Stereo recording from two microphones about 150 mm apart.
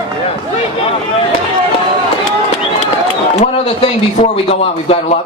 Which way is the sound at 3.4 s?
45° left (ahead or behind).